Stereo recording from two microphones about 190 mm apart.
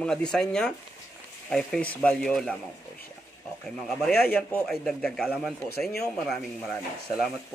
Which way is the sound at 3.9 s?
Centre (ahead or behind).